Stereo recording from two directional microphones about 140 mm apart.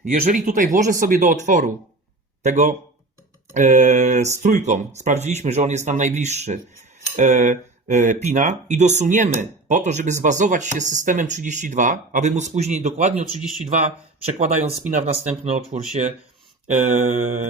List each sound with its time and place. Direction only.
0.0 s speech: 60° right (ahead or behind)
16.9 s speech: 55° right (ahead or behind)